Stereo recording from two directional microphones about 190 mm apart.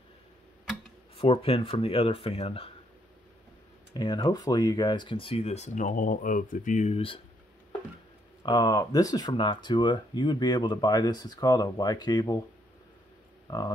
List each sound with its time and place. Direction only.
1.1 s speech: 30° left (ahead or behind)
3.9 s speech: 25° left (ahead or behind)
8.4 s speech: 20° left (ahead or behind)
13.5 s speech: 25° left (ahead or behind)